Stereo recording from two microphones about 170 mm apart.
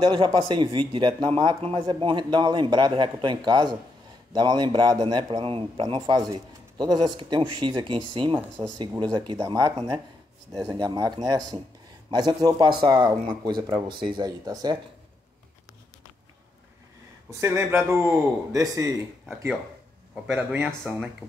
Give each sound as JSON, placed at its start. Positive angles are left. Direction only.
{"t": 0.0, "sound": "a man's voice", "side_deg": -25}
{"t": 17.3, "sound": "a man's voice", "side_deg": -15}
{"t": 20.3, "sound": "a man's voice", "side_deg": -10}